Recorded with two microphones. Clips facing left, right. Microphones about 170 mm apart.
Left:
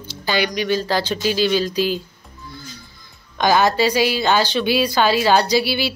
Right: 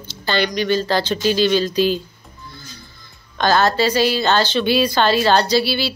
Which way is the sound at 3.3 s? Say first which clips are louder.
Even; 15° left (ahead or behind).